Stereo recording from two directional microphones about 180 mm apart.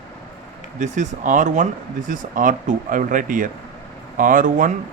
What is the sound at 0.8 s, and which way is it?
Speech, 40° right (ahead or behind).